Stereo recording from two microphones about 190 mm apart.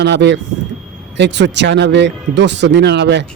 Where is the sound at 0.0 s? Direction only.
65° right (ahead or behind).